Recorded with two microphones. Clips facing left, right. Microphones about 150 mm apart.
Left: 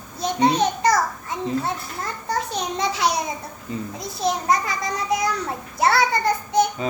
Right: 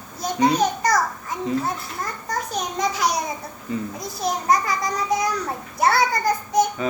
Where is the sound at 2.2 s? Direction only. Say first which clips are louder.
Left 2 dB; 30° left (ahead or behind).